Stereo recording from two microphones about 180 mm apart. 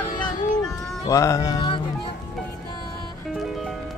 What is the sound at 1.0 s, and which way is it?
Music, 15° left (ahead or behind).